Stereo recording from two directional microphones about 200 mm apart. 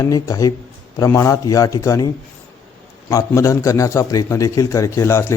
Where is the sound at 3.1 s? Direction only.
15° left (ahead or behind).